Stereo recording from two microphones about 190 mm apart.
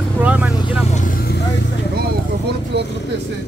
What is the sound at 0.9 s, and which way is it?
Vehicle, 45° left (ahead or behind).